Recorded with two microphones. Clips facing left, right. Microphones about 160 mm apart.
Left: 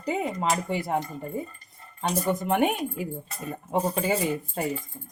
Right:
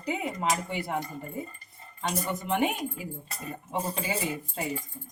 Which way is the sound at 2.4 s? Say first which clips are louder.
Left 2 dB; 55° left (ahead or behind).